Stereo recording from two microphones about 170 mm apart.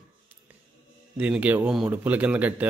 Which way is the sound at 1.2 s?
10° right (ahead or behind).